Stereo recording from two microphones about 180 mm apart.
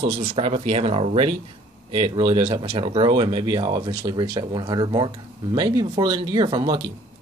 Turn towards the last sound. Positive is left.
turn(degrees=-25)  # may be behind; listen again after turning